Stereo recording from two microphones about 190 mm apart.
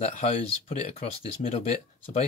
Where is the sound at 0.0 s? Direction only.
35° left (ahead or behind).